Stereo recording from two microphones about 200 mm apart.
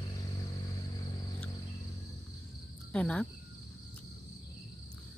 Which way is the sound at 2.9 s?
5° left (ahead or behind).